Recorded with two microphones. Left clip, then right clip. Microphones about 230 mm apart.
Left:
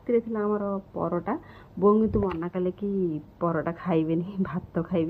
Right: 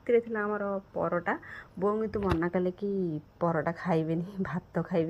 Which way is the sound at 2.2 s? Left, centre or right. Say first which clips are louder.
Even; right.